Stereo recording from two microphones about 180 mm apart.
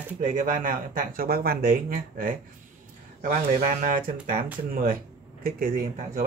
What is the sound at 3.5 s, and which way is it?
Speech, 50° right (ahead or behind).